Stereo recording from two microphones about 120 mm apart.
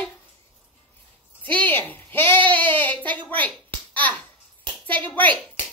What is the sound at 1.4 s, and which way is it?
Speech, 15° left (ahead or behind).